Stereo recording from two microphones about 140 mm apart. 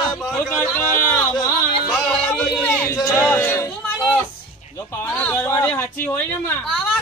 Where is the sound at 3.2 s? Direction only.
15° left (ahead or behind).